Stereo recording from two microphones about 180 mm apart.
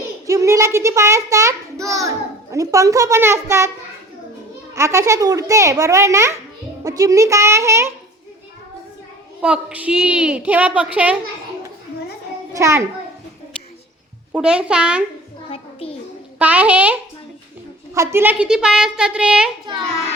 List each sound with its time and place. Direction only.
0.3 s a child's voice: 15° right (ahead or behind)
4.7 s a woman's voice: 15° right (ahead or behind)
9.4 s a woman's voice: 5° right (ahead or behind)
12.5 s a woman's voice: 15° right (ahead or behind)
14.3 s a woman's voice: 5° right (ahead or behind)
15.4 s a sound: 30° left (ahead or behind)
16.4 s a woman's voice: 10° right (ahead or behind)